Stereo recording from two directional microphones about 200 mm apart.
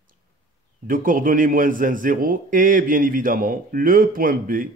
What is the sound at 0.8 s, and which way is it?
A man's voice, 45° right (ahead or behind).